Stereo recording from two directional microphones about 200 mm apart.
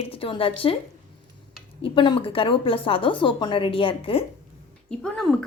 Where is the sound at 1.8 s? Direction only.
25° left (ahead or behind).